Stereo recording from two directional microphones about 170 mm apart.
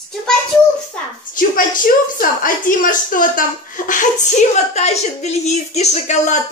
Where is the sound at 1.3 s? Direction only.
55° left (ahead or behind).